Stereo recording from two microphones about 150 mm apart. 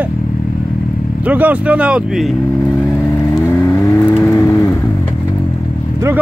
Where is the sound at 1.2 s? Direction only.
10° right (ahead or behind).